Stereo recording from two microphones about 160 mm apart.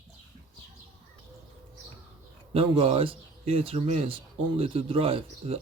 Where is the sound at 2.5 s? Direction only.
35° right (ahead or behind).